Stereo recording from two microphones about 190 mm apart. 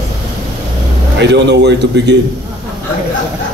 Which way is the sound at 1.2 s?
65° right (ahead or behind).